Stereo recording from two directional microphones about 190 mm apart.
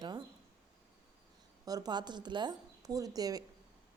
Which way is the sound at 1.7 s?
20° right (ahead or behind).